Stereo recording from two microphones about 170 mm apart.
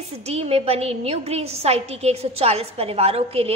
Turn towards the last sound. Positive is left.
turn(degrees=-35)  # may be behind; listen again after turning